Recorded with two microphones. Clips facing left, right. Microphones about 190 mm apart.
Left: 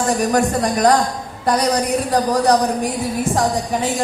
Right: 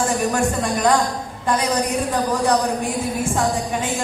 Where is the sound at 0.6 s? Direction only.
40° left (ahead or behind).